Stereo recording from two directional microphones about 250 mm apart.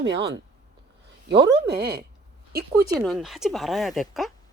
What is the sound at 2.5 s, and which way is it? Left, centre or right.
Speech, right.